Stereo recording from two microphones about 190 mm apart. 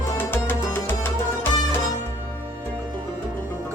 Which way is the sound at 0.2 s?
10° left (ahead or behind).